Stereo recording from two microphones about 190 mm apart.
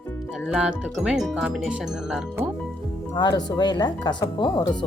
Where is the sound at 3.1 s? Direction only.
25° left (ahead or behind).